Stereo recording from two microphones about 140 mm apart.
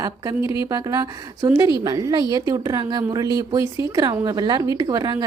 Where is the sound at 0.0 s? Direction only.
25° right (ahead or behind).